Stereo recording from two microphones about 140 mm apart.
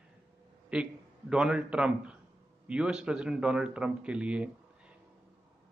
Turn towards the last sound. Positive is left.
turn(degrees=-10)  # may be behind; listen again after turning